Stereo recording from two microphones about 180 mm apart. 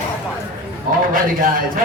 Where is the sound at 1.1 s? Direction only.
50° right (ahead or behind).